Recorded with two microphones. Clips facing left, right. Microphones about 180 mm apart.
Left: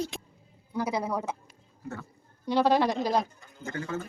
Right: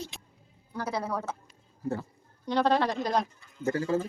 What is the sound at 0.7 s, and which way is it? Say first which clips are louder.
Speech: left 3 dB; 10° left (ahead or behind).